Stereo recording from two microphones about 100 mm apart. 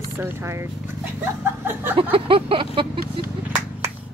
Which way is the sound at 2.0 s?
65° right (ahead or behind).